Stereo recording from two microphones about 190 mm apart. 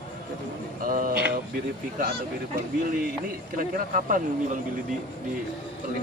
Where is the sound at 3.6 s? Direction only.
45° right (ahead or behind).